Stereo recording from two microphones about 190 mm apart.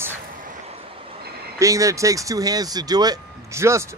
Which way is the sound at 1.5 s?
15° right (ahead or behind).